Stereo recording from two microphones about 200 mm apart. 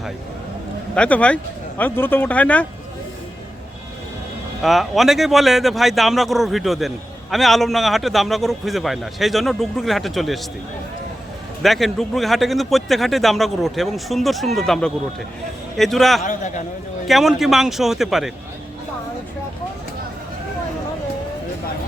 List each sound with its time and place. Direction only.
0.9 s speech: 5° left (ahead or behind)
4.6 s speech: centre (ahead or behind)
11.6 s speech: centre (ahead or behind)
16.2 s a man's voice: 40° left (ahead or behind)
17.1 s speech: centre (ahead or behind)